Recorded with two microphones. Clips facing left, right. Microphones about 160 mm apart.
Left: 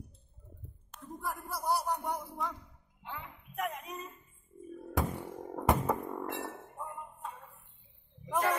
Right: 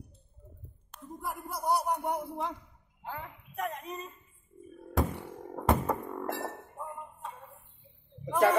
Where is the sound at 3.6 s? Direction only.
Centre (ahead or behind).